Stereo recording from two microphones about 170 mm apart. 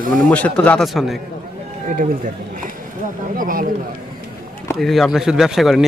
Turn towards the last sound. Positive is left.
turn(degrees=0)  # may be behind; listen again after turning